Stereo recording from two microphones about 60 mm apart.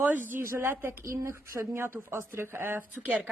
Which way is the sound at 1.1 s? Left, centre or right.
Right.